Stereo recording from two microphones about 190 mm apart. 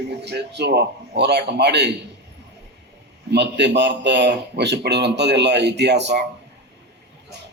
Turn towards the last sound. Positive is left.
turn(degrees=-65)  # may be behind; listen again after turning